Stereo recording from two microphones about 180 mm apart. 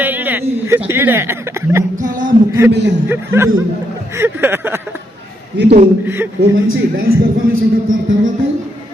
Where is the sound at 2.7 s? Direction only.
70° right (ahead or behind).